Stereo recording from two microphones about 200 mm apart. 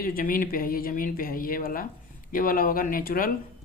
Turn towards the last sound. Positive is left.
turn(degrees=45)  # may be behind; listen again after turning